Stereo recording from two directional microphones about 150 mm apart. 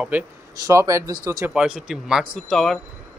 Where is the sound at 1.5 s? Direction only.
5° right (ahead or behind).